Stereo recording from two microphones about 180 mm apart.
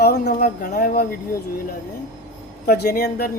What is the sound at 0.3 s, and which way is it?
Speech, 55° left (ahead or behind).